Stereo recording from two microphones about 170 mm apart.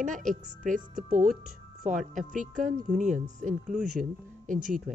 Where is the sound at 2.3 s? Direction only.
50° right (ahead or behind).